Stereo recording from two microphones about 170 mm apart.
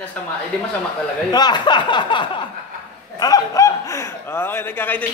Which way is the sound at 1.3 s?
25° left (ahead or behind).